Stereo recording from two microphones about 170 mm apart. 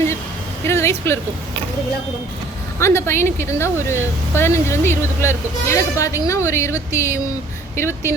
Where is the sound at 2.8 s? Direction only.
15° left (ahead or behind).